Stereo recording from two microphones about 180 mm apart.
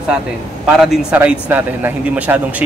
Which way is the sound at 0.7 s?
5° right (ahead or behind).